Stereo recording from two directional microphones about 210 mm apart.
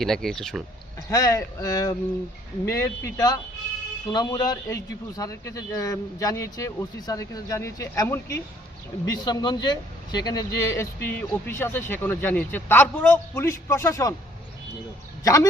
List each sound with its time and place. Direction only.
0.0 s speech: centre (ahead or behind)
1.1 s a man's voice: 15° left (ahead or behind)
15.2 s speech: 15° left (ahead or behind)